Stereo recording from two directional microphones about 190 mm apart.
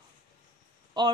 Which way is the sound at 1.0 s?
25° right (ahead or behind).